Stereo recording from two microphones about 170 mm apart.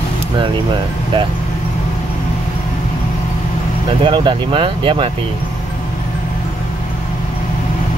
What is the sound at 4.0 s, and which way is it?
Speech, 30° right (ahead or behind).